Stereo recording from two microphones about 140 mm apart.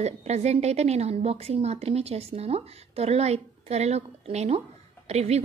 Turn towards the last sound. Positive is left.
turn(degrees=-50)  # may be behind; listen again after turning